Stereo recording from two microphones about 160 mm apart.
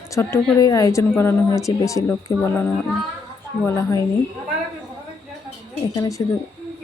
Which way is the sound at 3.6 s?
20° left (ahead or behind).